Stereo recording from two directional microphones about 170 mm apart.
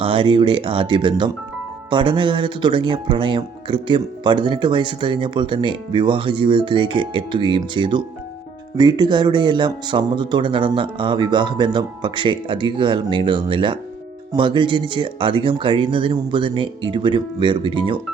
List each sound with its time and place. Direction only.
0.0 s speech: 30° right (ahead or behind)